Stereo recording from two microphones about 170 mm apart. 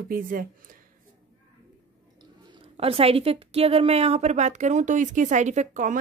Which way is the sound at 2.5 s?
35° right (ahead or behind).